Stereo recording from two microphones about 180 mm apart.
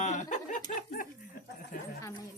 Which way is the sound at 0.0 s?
40° left (ahead or behind).